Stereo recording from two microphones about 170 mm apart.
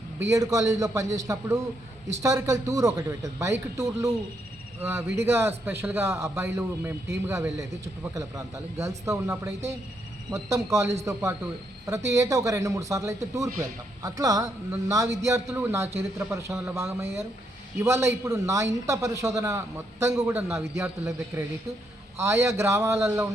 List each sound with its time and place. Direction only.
0.2 s a man's voice: 20° right (ahead or behind)